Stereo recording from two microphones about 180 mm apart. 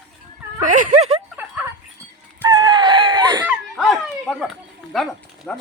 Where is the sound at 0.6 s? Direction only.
45° right (ahead or behind).